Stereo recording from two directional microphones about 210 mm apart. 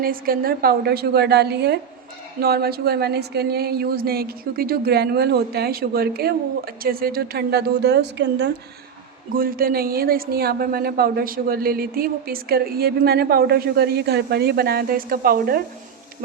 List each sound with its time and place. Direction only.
0.0 s a woman's voice: 45° right (ahead or behind)
9.3 s a woman's voice: 45° right (ahead or behind)